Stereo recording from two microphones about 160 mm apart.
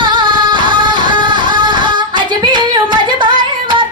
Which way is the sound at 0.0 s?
30° right (ahead or behind).